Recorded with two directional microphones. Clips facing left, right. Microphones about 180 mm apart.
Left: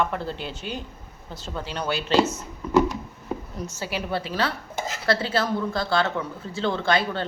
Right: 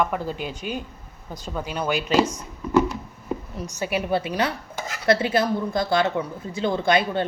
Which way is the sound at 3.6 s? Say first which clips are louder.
Right 4 dB; 15° right (ahead or behind).